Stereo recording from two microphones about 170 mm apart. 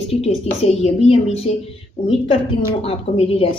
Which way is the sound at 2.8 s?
35° left (ahead or behind).